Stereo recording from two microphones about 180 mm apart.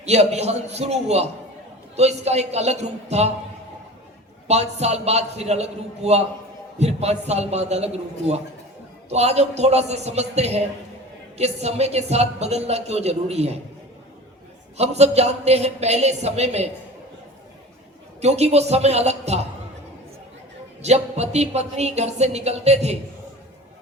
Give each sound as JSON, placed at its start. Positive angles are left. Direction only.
{"t": 0.0, "sound": "speech", "side_deg": -35}
{"t": 4.4, "sound": "speech", "side_deg": -35}
{"t": 14.8, "sound": "speech", "side_deg": -35}
{"t": 18.2, "sound": "a woman's voice", "side_deg": -35}
{"t": 20.8, "sound": "speech", "side_deg": -35}